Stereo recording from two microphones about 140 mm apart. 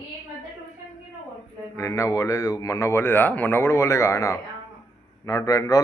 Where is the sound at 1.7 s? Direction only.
25° left (ahead or behind).